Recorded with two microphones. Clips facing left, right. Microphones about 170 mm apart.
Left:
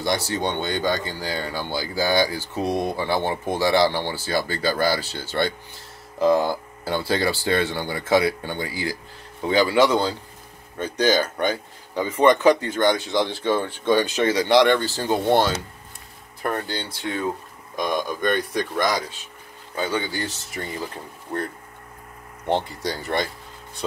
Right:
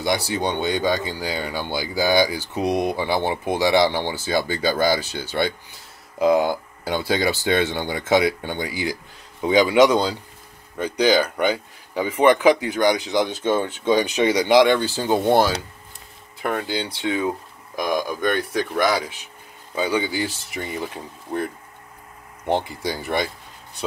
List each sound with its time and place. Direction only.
0.0 s speech: 15° right (ahead or behind)
17.7 s speech: 5° right (ahead or behind)
22.5 s speech: 10° right (ahead or behind)